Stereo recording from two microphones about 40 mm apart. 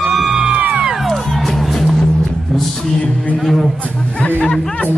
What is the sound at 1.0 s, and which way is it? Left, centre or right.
Music, centre.